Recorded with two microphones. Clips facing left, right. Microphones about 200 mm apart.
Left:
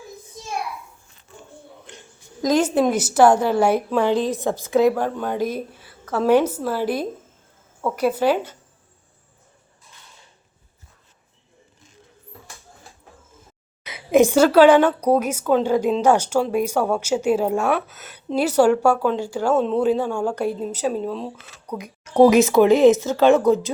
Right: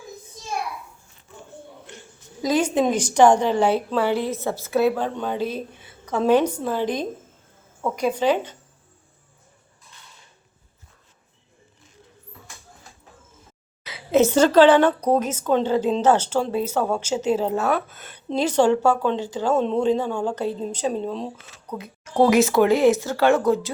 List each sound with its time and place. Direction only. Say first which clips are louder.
2.4 s a woman's voice: left 2 dB; 10° right (ahead or behind)
2.6 s a woman's voice: left 2 dB; 10° left (ahead or behind)
5.7 s a sound: left 1 dB; 20° right (ahead or behind)
6.1 s a woman's voice: left 1 dB; 10° left (ahead or behind)
13.8 s a woman's voice: left 2 dB; 15° left (ahead or behind)
21.8 s speech: left 5 dB; 15° left (ahead or behind)